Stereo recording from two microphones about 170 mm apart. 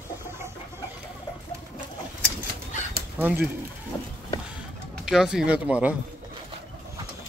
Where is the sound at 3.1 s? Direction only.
10° right (ahead or behind).